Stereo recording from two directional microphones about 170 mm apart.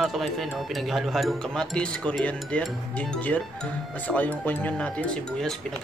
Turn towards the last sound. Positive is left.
turn(degrees=0)  # may be behind; listen again after turning